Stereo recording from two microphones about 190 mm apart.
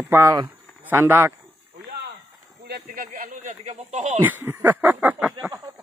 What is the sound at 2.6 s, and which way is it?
Speech, 55° right (ahead or behind).